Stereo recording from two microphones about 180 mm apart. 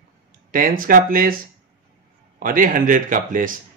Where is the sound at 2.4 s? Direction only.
50° right (ahead or behind).